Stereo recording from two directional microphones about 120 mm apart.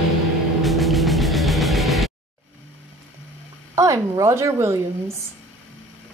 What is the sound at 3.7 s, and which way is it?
A woman's voice, 25° right (ahead or behind).